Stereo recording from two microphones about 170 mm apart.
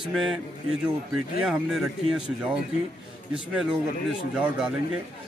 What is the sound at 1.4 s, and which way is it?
A man's voice, 5° right (ahead or behind).